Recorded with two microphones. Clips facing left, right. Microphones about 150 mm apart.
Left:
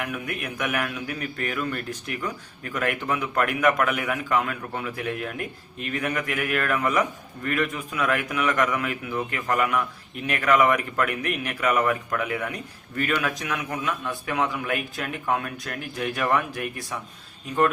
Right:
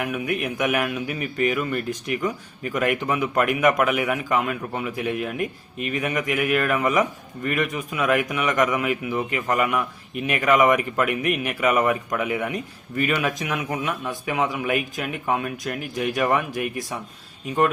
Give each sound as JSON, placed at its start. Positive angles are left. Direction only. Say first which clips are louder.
{"t": 0.4, "sound": "speech", "louder": "right 3 dB", "side_deg": -20}
{"t": 11.6, "sound": "speech", "louder": "right 2 dB", "side_deg": -20}